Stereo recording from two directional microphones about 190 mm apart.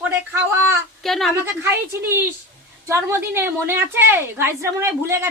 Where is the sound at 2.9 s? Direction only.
15° right (ahead or behind).